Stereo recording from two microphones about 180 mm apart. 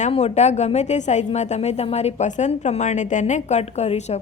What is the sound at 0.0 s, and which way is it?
A woman's voice, 35° left (ahead or behind).